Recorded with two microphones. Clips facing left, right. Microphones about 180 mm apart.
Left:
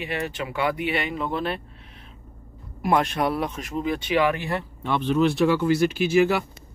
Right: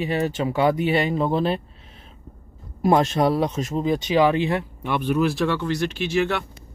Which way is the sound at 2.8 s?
25° right (ahead or behind).